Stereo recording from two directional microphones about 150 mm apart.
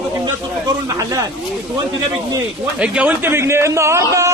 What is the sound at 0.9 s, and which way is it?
Speech, 20° right (ahead or behind).